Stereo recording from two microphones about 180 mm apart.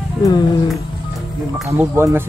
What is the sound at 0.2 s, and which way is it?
Speech, 20° left (ahead or behind).